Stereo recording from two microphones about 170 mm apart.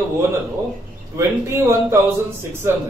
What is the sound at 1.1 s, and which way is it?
Speech, 15° right (ahead or behind).